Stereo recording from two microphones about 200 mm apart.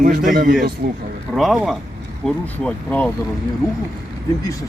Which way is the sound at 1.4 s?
Centre (ahead or behind).